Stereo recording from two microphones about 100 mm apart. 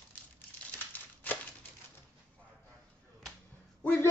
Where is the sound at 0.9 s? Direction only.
20° left (ahead or behind).